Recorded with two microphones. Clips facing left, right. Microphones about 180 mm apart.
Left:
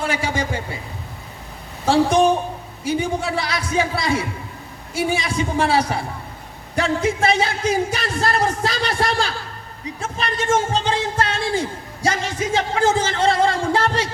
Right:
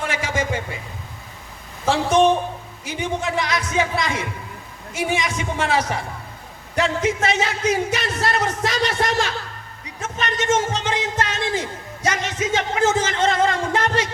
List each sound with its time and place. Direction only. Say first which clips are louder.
0.0 s a man's voice: left 1 dB; 35° left (ahead or behind)
1.9 s a man's voice: left 1 dB; 35° left (ahead or behind)